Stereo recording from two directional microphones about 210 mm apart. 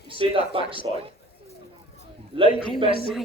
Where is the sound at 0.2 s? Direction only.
25° right (ahead or behind).